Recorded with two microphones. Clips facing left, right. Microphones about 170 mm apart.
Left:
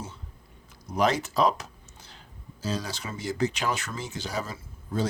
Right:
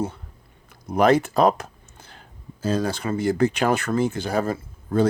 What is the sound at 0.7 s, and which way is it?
Speech, 55° right (ahead or behind).